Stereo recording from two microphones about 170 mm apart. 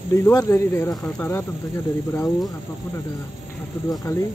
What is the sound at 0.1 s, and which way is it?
Speech, 15° left (ahead or behind).